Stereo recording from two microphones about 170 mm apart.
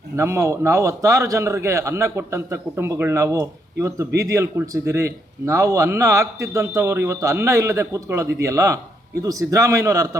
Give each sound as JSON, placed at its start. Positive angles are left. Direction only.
{"t": 0.2, "sound": "a man's voice", "side_deg": -15}